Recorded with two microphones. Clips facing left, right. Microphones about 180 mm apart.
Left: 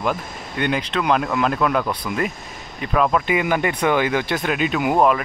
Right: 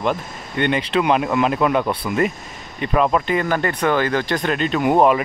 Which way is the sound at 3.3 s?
10° left (ahead or behind).